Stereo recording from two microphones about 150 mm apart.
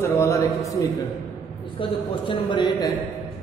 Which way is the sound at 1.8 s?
35° left (ahead or behind).